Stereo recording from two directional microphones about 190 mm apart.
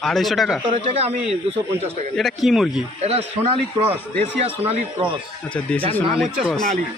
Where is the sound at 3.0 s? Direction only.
35° right (ahead or behind).